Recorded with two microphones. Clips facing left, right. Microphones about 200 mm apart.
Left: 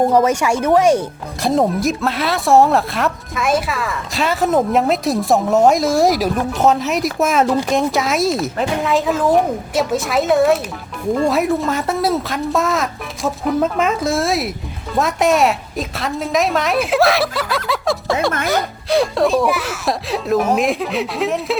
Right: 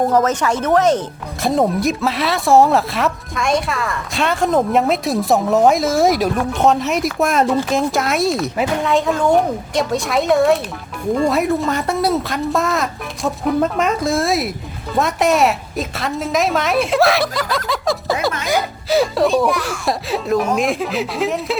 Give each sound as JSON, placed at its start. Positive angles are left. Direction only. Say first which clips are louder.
{"t": 0.1, "sound": "speech", "louder": "left 2 dB", "side_deg": 10}
{"t": 1.4, "sound": "speech", "louder": "even", "side_deg": 0}